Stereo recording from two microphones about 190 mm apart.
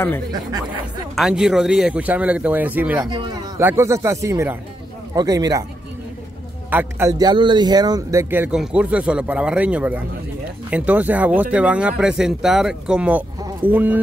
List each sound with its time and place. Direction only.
0.3 s speech: 20° right (ahead or behind)
1.1 s speech: centre (ahead or behind)
3.1 s speech: 25° right (ahead or behind)
6.7 s speech: 10° right (ahead or behind)